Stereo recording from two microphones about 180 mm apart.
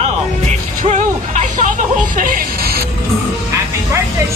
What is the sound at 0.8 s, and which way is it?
Music, 45° right (ahead or behind).